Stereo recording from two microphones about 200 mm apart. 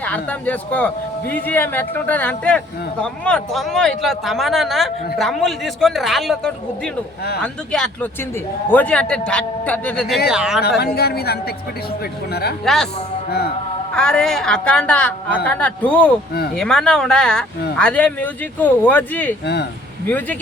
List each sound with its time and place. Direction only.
0.0 s a man's voice: 5° left (ahead or behind)
10.8 s a man's voice: 55° left (ahead or behind)
12.6 s a man's voice: centre (ahead or behind)
13.9 s a man's voice: 5° left (ahead or behind)